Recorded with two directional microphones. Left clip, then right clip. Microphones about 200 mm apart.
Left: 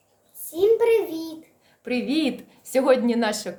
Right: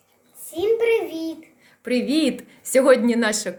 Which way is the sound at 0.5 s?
20° left (ahead or behind).